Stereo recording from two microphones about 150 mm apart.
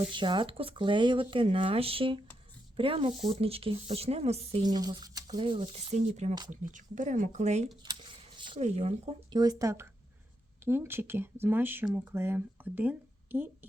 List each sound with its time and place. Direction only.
0.1 s speech: 35° right (ahead or behind)
4.6 s speech: 25° right (ahead or behind); by 7.7 s 50° right (ahead or behind)
7.9 s a sound: 30° right (ahead or behind)
8.6 s speech: 45° right (ahead or behind)
9.3 s speech: 25° right (ahead or behind)